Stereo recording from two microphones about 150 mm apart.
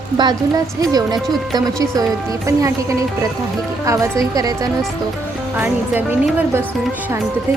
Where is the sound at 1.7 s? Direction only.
25° right (ahead or behind).